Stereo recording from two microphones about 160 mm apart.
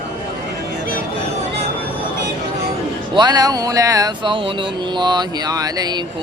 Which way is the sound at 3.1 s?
25° right (ahead or behind).